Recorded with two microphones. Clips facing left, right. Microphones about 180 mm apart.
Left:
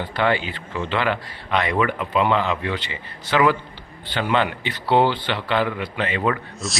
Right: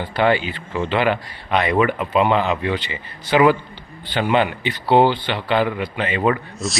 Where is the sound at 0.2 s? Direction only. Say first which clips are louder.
Right 4 dB; 15° right (ahead or behind).